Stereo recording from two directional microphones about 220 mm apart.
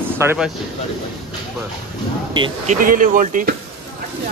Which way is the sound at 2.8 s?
40° right (ahead or behind).